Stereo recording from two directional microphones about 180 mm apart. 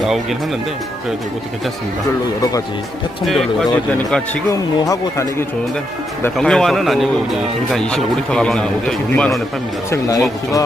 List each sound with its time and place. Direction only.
0.0 s a man's voice: centre (ahead or behind)
3.3 s a man's voice: 5° left (ahead or behind)
4.5 s speech: 20° left (ahead or behind)
6.3 s a man's voice: 5° left (ahead or behind)
9.8 s speech: 20° left (ahead or behind)